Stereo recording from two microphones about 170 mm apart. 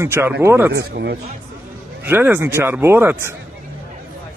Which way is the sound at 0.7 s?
75° right (ahead or behind).